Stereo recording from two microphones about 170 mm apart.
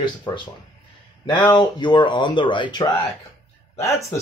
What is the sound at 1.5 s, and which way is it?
Speech, 25° left (ahead or behind).